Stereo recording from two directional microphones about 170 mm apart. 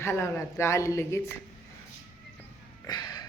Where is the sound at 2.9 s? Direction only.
25° left (ahead or behind).